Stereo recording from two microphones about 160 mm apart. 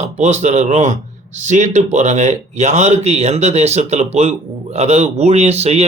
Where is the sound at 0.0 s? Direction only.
45° right (ahead or behind).